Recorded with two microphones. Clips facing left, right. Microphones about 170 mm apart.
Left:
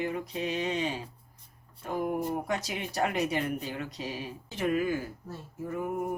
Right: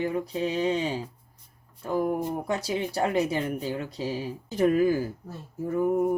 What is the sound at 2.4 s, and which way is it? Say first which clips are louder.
Speech: right 5 dB; 30° right (ahead or behind).